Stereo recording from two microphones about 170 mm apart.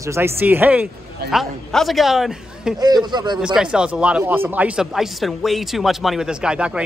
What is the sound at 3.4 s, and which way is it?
Speech, 5° right (ahead or behind).